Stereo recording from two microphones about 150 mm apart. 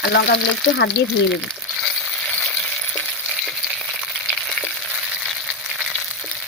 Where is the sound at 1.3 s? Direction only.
Centre (ahead or behind).